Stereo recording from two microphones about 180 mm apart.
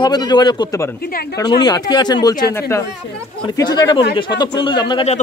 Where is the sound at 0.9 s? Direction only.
55° left (ahead or behind).